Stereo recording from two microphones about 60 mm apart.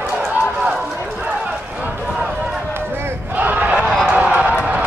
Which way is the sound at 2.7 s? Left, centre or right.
Right.